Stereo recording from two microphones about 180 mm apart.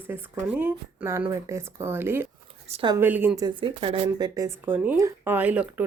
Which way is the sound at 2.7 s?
30° right (ahead or behind).